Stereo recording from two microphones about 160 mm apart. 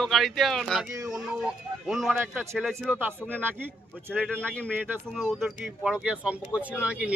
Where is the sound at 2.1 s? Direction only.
10° right (ahead or behind).